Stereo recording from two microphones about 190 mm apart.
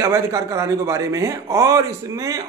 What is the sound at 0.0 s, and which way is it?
A man's voice, 15° right (ahead or behind).